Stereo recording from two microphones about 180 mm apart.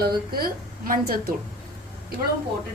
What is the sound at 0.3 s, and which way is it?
Speech, 55° right (ahead or behind).